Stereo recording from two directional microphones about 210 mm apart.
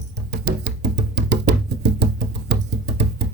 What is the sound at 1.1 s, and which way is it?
Music, 55° right (ahead or behind).